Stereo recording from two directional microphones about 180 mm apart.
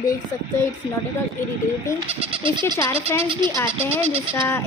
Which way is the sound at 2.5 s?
25° right (ahead or behind).